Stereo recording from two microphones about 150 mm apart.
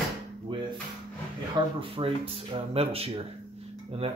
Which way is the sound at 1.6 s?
30° right (ahead or behind).